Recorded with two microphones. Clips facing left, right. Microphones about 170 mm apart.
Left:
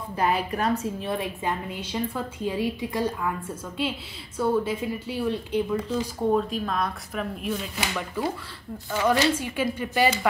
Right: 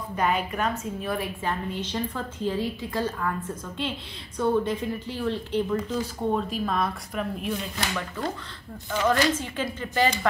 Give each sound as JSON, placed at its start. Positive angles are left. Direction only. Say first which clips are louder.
{"t": 0.1, "sound": "a woman's voice", "louder": "left 1 dB", "side_deg": 35}
{"t": 5.9, "sound": "speech", "louder": "left 2 dB", "side_deg": 0}
{"t": 8.2, "sound": "a woman's voice", "louder": "left 3 dB", "side_deg": 10}